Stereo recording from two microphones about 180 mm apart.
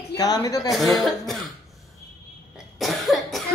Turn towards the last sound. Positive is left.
turn(degrees=0)  # may be behind; listen again after turning